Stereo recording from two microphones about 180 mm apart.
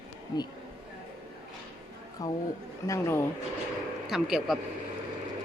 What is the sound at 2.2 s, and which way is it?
Speech, 20° left (ahead or behind).